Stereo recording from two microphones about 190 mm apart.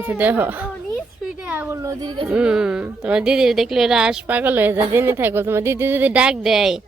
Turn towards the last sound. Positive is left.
turn(degrees=0)  # may be behind; listen again after turning